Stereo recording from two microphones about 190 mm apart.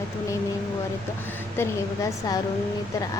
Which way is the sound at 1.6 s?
20° left (ahead or behind).